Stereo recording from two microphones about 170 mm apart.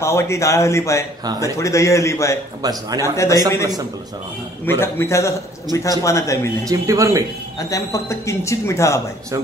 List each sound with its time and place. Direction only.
0.0 s a man's voice: 15° left (ahead or behind)
2.6 s a man's voice: 20° right (ahead or behind)
3.0 s a man's voice: 15° left (ahead or behind)
4.6 s a man's voice: 15° left (ahead or behind)
6.6 s speech: 20° right (ahead or behind)
7.5 s a man's voice: 20° left (ahead or behind)